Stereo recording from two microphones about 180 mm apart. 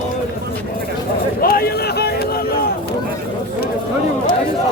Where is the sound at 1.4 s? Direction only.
55° left (ahead or behind).